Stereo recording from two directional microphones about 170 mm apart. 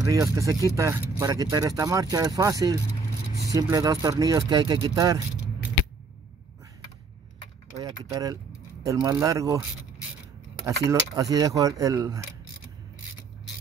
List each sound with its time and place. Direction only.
0.0 s speech: 20° right (ahead or behind)
7.8 s speech: 20° right (ahead or behind)
10.6 s speech: 20° right (ahead or behind)